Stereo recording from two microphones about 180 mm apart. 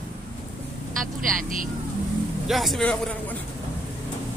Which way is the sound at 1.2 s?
50° right (ahead or behind).